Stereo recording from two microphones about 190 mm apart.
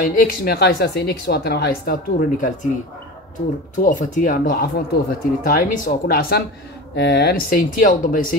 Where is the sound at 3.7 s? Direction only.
45° left (ahead or behind).